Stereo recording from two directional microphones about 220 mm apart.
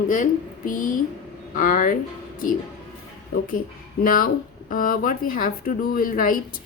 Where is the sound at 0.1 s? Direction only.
35° left (ahead or behind).